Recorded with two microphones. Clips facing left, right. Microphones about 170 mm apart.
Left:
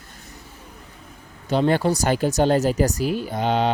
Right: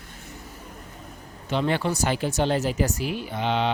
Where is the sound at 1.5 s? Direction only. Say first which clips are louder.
Left 5 dB; 40° left (ahead or behind).